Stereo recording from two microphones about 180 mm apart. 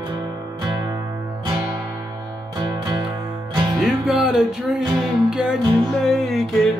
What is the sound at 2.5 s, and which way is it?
Music, 25° right (ahead or behind).